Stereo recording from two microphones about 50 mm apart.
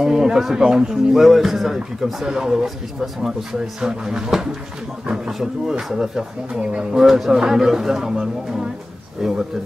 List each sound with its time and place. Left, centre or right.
0.0 s speech: centre
7.0 s speech: centre